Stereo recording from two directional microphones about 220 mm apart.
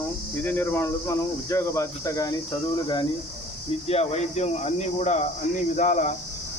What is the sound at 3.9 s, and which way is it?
Speech, 30° left (ahead or behind).